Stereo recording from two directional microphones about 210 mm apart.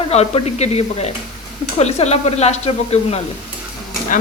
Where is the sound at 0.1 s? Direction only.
30° left (ahead or behind).